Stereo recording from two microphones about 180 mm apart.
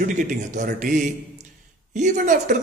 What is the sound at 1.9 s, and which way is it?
Speech, 45° right (ahead or behind).